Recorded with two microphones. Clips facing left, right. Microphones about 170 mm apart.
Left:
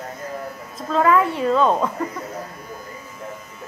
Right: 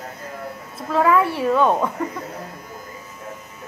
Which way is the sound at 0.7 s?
10° right (ahead or behind).